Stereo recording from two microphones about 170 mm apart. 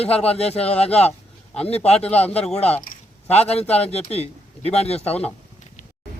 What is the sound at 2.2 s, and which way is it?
Speech, 10° left (ahead or behind).